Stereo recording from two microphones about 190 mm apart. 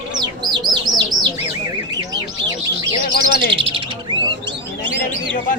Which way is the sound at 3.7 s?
25° right (ahead or behind).